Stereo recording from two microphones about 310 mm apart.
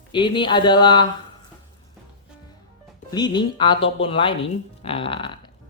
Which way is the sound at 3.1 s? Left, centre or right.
Centre.